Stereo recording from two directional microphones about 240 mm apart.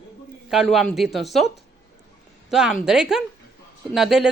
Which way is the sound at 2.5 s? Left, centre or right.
Centre.